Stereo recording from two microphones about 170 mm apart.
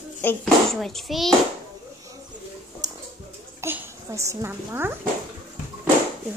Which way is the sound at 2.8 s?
20° right (ahead or behind).